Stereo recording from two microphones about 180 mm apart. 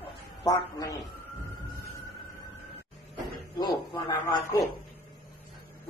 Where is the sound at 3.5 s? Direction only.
25° left (ahead or behind).